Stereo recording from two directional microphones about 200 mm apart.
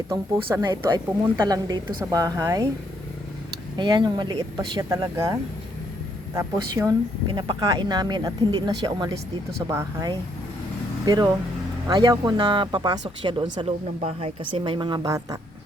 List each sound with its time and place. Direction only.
0.1 s speech: 20° right (ahead or behind)
3.8 s speech: 20° right (ahead or behind)
6.3 s a woman's voice: 15° right (ahead or behind)